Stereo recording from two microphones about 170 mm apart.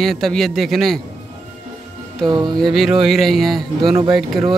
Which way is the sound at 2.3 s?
25° right (ahead or behind).